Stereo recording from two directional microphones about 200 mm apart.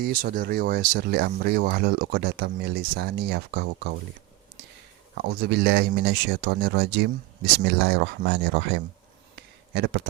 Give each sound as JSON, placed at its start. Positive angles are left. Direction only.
{"t": 0.0, "sound": "speech", "side_deg": -45}
{"t": 5.1, "sound": "speech", "side_deg": -55}
{"t": 9.3, "sound": "a sound", "side_deg": -55}